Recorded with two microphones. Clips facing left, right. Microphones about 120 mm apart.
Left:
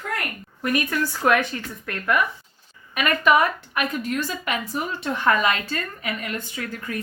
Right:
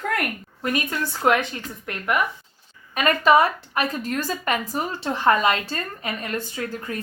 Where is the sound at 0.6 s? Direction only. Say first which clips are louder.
Left 2 dB; 25° right (ahead or behind).